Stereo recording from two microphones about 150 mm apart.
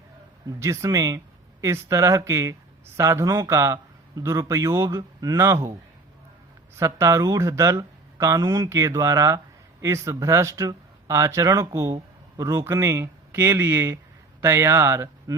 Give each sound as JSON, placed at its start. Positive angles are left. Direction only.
{"t": 0.6, "sound": "speech", "side_deg": -20}
{"t": 6.7, "sound": "speech", "side_deg": -20}